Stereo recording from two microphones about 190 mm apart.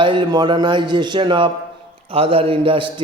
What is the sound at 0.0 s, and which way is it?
A man's voice, 25° right (ahead or behind).